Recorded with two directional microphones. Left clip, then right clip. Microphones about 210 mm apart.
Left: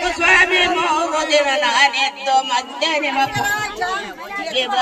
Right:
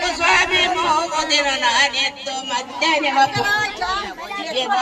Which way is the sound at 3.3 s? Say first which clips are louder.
Right 1 dB; 45° left (ahead or behind).